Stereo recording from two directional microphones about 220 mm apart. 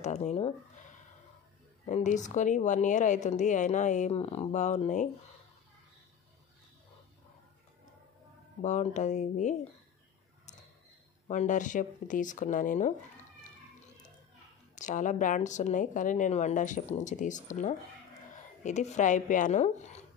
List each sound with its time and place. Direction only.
0.0 s speech: 30° left (ahead or behind)
1.9 s speech: 35° left (ahead or behind)
8.6 s speech: 35° left (ahead or behind)
11.2 s speech: 35° left (ahead or behind)
14.8 s speech: 35° left (ahead or behind)